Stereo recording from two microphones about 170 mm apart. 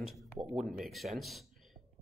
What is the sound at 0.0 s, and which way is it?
Speech, centre (ahead or behind).